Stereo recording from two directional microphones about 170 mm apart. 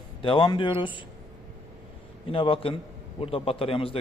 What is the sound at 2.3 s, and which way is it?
A man's voice, 30° left (ahead or behind).